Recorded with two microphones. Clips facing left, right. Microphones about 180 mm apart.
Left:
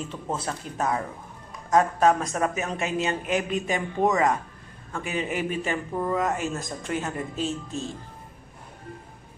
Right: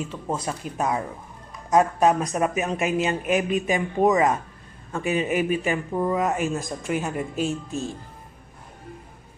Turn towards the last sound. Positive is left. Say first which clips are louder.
# right 3 dB
turn(degrees=-15)  # may be behind; listen again after turning